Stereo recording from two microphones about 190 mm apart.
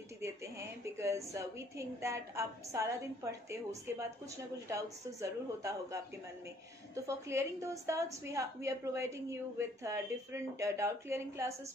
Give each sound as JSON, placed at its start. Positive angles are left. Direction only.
{"t": 0.2, "sound": "a woman's voice", "side_deg": -15}
{"t": 5.2, "sound": "a woman's voice", "side_deg": -15}
{"t": 7.1, "sound": "a woman's voice", "side_deg": -15}